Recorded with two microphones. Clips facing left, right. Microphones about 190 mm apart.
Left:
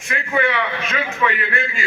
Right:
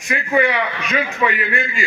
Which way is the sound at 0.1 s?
15° right (ahead or behind).